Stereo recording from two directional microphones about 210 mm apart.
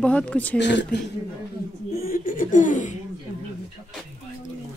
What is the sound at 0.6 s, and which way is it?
Speech, 55° left (ahead or behind).